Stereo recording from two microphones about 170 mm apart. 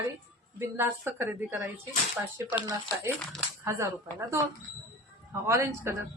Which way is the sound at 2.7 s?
20° right (ahead or behind).